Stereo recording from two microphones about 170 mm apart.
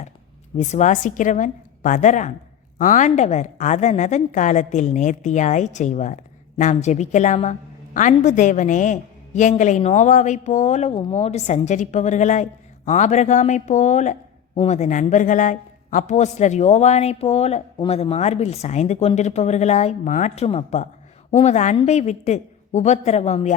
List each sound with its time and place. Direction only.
0.5 s a woman's voice: 40° left (ahead or behind)